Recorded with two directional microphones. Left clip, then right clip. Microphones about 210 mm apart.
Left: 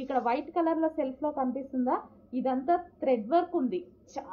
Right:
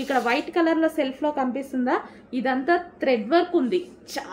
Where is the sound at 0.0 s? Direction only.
25° right (ahead or behind).